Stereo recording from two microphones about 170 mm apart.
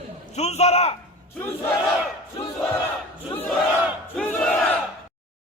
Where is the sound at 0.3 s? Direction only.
40° left (ahead or behind).